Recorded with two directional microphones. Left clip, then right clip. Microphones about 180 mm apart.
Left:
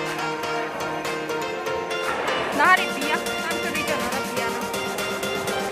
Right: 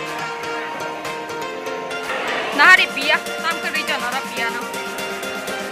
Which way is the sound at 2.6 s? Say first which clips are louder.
Right 7 dB; centre (ahead or behind).